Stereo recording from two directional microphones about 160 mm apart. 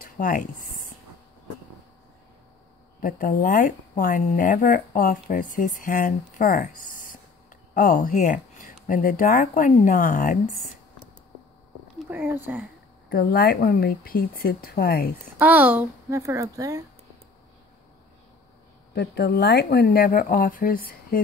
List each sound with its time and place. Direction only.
0.0 s a sound: 60° left (ahead or behind)
3.0 s a woman's voice: 60° left (ahead or behind)
12.1 s speech: 10° right (ahead or behind)
13.1 s speech: 70° left (ahead or behind)
15.3 s a woman's voice: 10° right (ahead or behind)
16.1 s speech: 20° right (ahead or behind)
18.9 s speech: 90° left; by 21.2 s 65° left (ahead or behind)